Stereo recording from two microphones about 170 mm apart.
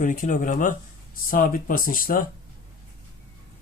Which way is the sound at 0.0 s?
50° left (ahead or behind).